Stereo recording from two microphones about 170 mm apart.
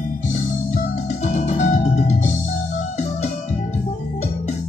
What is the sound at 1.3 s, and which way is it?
Music, 45° left (ahead or behind).